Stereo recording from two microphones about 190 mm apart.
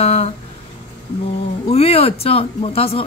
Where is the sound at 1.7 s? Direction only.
30° left (ahead or behind).